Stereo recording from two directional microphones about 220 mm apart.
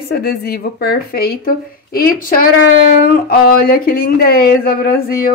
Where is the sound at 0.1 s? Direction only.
45° left (ahead or behind).